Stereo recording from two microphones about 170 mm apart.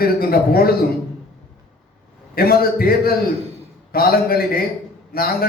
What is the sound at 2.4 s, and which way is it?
A man's voice, 60° left (ahead or behind).